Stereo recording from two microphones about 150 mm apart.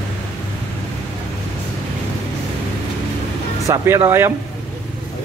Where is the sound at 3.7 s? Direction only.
20° right (ahead or behind).